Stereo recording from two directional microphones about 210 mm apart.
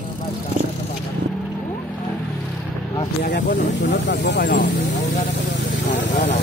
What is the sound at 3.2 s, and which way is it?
Speech, 45° left (ahead or behind).